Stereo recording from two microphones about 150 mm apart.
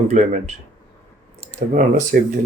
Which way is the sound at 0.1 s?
50° right (ahead or behind).